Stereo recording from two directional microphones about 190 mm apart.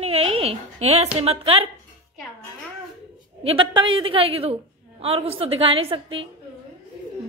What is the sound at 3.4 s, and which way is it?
A woman's voice, 25° right (ahead or behind).